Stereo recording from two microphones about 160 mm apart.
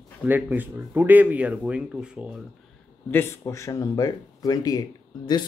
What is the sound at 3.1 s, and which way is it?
Speech, 15° left (ahead or behind).